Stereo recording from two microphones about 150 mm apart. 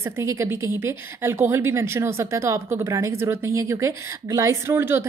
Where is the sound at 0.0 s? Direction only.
20° right (ahead or behind).